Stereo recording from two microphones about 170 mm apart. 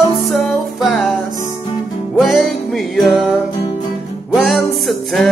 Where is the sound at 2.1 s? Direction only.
Centre (ahead or behind).